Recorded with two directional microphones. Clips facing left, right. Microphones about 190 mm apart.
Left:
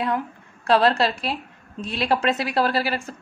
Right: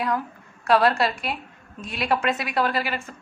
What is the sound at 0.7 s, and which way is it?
A woman's voice, 25° left (ahead or behind).